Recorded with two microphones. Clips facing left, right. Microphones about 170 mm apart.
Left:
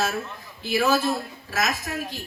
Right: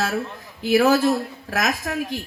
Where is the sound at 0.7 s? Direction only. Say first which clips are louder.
Right 6 dB; 90° right.